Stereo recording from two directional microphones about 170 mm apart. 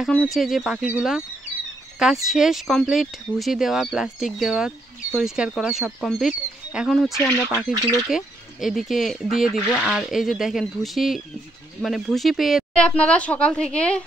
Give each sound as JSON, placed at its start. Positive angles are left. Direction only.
{"t": 0.0, "sound": "speech", "side_deg": 5}
{"t": 7.1, "sound": "speech", "side_deg": 15}
{"t": 8.1, "sound": "speech", "side_deg": 0}